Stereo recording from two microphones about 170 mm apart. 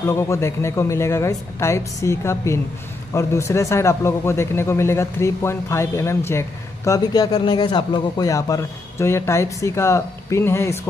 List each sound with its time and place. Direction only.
0.1 s speech: 15° left (ahead or behind)